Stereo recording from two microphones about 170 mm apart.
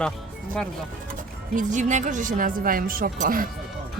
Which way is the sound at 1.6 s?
45° right (ahead or behind).